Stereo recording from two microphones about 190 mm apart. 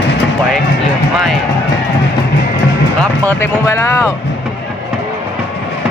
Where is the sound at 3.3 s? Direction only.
10° left (ahead or behind).